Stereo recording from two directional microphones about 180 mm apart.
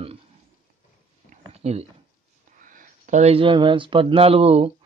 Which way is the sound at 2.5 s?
45° right (ahead or behind).